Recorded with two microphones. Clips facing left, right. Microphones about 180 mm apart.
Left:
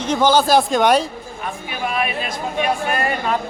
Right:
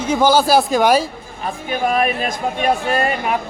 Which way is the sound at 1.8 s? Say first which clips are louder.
Right 5 dB; 40° right (ahead or behind).